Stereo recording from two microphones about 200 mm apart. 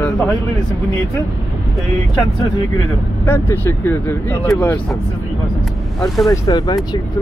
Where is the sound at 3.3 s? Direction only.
10° left (ahead or behind).